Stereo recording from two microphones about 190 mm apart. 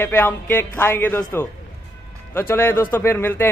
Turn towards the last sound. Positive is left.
turn(degrees=10)  # may be behind; listen again after turning